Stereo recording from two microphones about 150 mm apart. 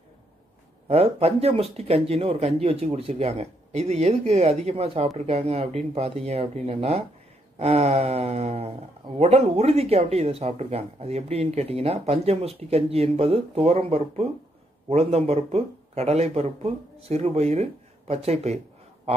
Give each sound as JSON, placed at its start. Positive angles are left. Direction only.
{"t": 0.8, "sound": "speech", "side_deg": -40}